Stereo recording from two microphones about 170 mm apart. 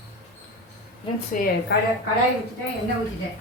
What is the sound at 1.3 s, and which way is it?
Speech, 50° left (ahead or behind).